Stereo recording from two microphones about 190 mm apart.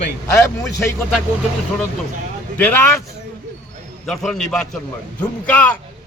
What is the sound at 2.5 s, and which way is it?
Speech, 10° left (ahead or behind).